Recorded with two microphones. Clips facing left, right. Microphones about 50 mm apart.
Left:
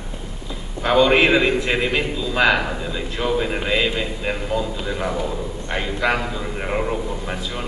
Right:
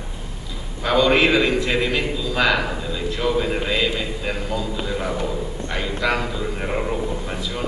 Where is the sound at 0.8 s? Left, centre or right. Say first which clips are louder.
Left 2 dB; centre.